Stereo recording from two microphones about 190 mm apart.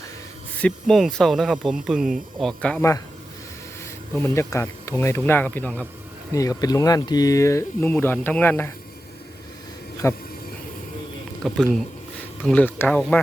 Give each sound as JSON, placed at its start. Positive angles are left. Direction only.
{"t": 0.6, "sound": "speech", "side_deg": 0}
{"t": 4.1, "sound": "speech", "side_deg": 10}
{"t": 10.0, "sound": "speech", "side_deg": 15}
{"t": 11.4, "sound": "speech", "side_deg": 0}